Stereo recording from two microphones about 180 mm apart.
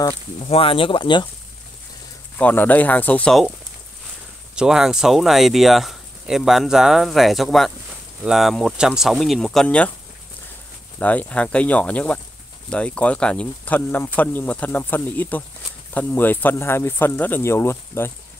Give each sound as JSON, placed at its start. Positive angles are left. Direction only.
{"t": 0.4, "sound": "speech", "side_deg": 30}
{"t": 2.3, "sound": "speech", "side_deg": 10}
{"t": 4.6, "sound": "speech", "side_deg": -5}
{"t": 11.0, "sound": "speech", "side_deg": 10}